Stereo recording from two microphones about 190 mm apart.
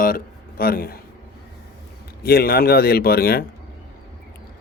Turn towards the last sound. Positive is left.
turn(degrees=55)  # may be behind; listen again after turning